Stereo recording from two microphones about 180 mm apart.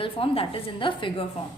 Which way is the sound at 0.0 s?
30° left (ahead or behind).